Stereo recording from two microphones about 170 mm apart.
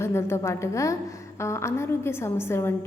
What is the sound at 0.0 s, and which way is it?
A woman's voice, 15° left (ahead or behind).